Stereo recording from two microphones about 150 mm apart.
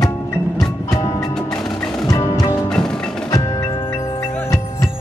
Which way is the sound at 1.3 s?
5° left (ahead or behind).